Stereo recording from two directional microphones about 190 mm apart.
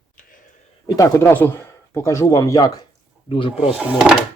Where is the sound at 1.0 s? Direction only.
15° left (ahead or behind).